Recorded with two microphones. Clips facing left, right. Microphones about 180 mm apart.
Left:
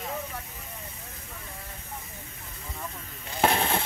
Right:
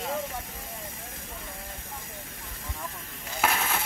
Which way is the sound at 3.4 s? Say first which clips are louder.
Left 4 dB; 30° left (ahead or behind).